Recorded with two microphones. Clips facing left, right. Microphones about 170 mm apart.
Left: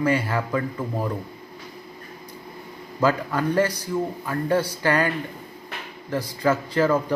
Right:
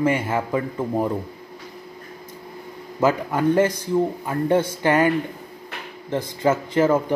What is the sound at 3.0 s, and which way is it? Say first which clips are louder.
Speech: right 2 dB; 20° right (ahead or behind).